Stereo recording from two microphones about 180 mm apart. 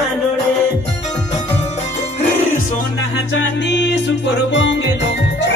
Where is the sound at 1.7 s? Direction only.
40° left (ahead or behind).